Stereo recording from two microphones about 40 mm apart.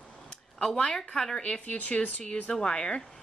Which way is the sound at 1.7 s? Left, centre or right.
Left.